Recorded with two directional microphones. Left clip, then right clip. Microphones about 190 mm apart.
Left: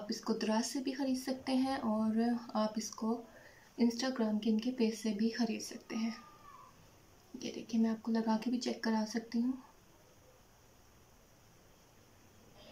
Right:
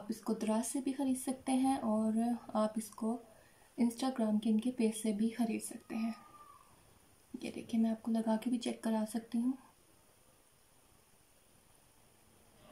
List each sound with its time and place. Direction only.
0.2 s speech: 20° right (ahead or behind)
3.0 s speech: 5° right (ahead or behind)
3.7 s speech: 25° right (ahead or behind)
7.8 s speech: 20° right (ahead or behind)